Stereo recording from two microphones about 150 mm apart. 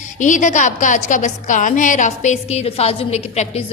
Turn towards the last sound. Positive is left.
turn(degrees=45)  # may be behind; listen again after turning